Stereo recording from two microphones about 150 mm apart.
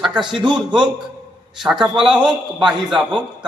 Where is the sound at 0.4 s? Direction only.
30° right (ahead or behind).